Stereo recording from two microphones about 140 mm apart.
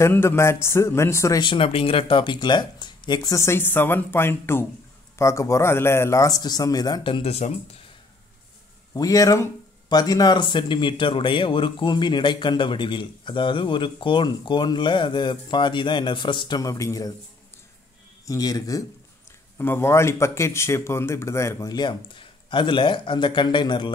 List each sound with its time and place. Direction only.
0.0 s speech: 15° left (ahead or behind)
1.4 s speech: 40° left (ahead or behind)
8.9 s speech: 25° left (ahead or behind)
18.2 s speech: 25° left (ahead or behind)